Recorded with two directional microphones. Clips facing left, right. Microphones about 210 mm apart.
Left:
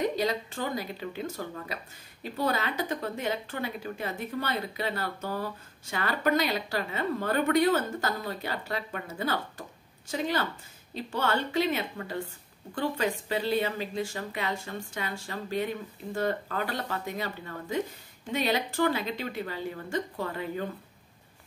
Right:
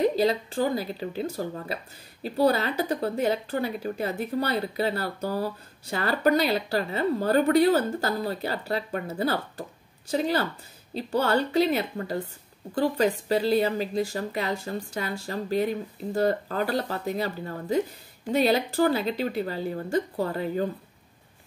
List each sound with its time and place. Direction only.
0.0 s speech: 30° right (ahead or behind)